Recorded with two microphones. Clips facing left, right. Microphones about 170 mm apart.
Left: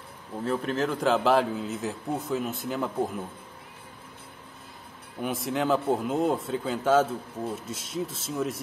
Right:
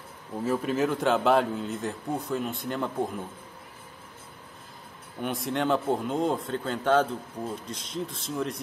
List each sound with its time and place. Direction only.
0.4 s speech: 5° right (ahead or behind)
5.2 s speech: centre (ahead or behind)